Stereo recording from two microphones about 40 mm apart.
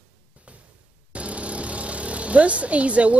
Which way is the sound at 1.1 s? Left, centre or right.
Right.